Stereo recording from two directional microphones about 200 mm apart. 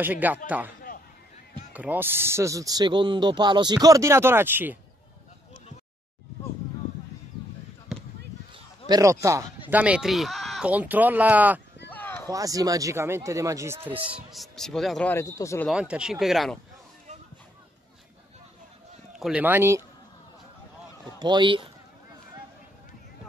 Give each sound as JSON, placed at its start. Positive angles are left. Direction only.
{"t": 0.0, "sound": "speech", "side_deg": -10}
{"t": 8.8, "sound": "speech", "side_deg": -15}
{"t": 11.9, "sound": "run", "side_deg": 10}
{"t": 12.3, "sound": "speech", "side_deg": -15}
{"t": 15.7, "sound": "speech", "side_deg": -5}
{"t": 19.1, "sound": "speech", "side_deg": -5}
{"t": 21.2, "sound": "speech", "side_deg": -25}